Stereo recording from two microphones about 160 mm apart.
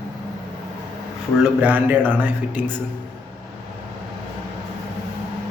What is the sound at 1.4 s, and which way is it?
A man's voice, 5° right (ahead or behind).